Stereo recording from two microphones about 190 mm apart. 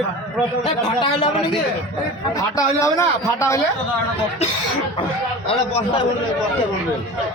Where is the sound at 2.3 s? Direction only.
15° left (ahead or behind).